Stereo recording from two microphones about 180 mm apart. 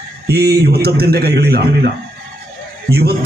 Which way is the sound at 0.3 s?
60° right (ahead or behind).